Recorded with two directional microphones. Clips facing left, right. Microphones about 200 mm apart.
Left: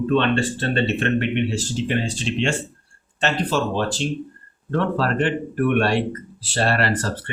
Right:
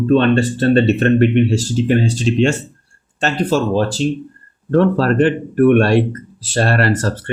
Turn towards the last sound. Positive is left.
turn(degrees=-45)  # may be behind; listen again after turning